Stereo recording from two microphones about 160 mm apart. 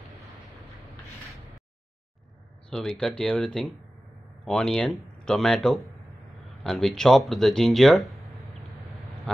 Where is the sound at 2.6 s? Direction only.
5° left (ahead or behind).